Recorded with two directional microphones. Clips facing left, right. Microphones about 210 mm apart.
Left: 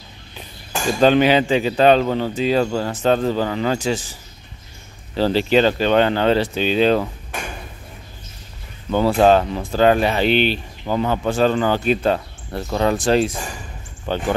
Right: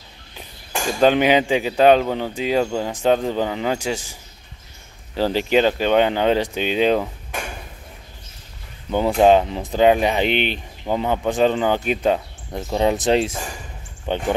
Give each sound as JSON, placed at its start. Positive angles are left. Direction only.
{"t": 0.9, "sound": "speech", "side_deg": -10}
{"t": 9.2, "sound": "speech", "side_deg": -20}